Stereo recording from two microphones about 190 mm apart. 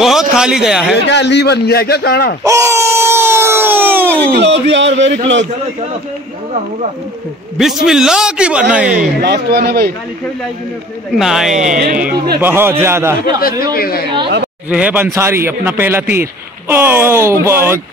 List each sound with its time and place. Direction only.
0.0 s a man's voice: centre (ahead or behind)
0.9 s a man's voice: 65° left (ahead or behind)
2.4 s a sound: 15° right (ahead or behind)
4.4 s speech: 70° right (ahead or behind)
7.5 s a man's voice: centre (ahead or behind)
9.2 s speech: 60° right (ahead or behind)
11.1 s a man's voice: centre (ahead or behind)
13.4 s speech: 50° left (ahead or behind)
14.7 s a man's voice: 5° right (ahead or behind)